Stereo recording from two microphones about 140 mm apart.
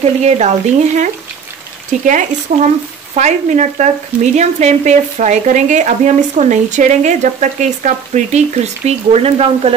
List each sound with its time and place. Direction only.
0.0 s speech: 50° right (ahead or behind)